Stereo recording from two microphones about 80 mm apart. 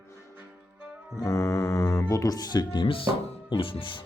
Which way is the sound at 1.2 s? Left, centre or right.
Left.